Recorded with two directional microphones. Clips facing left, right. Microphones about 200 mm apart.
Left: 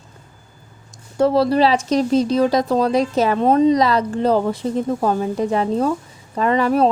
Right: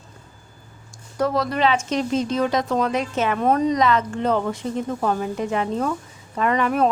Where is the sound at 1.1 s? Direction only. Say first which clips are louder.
Left 7 dB; 30° left (ahead or behind).